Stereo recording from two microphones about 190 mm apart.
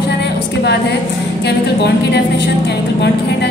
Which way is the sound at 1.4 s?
60° left (ahead or behind).